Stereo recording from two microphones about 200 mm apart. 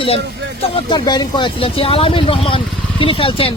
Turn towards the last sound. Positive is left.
turn(degrees=25)  # may be behind; listen again after turning